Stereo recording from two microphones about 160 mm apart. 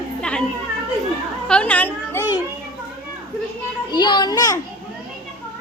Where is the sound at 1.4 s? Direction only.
5° left (ahead or behind).